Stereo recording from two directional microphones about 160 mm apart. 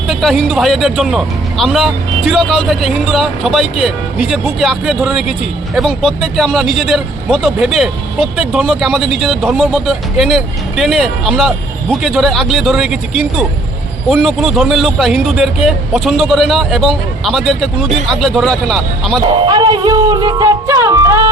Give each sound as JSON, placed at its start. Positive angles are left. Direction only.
{"t": 0.1, "sound": "speech", "side_deg": 0}
{"t": 19.3, "sound": "music", "side_deg": -30}